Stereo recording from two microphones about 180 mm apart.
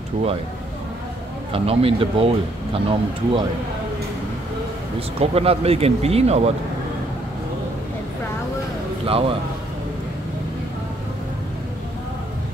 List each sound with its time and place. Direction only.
1.5 s speech: 30° right (ahead or behind)
5.2 s speech: 35° right (ahead or behind)
9.0 s speech: 30° right (ahead or behind)